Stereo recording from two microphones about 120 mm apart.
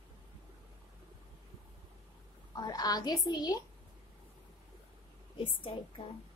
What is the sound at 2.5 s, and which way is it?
A woman's voice, 35° left (ahead or behind).